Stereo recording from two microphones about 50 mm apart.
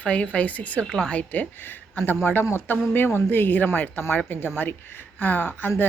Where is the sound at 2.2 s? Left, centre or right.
Left.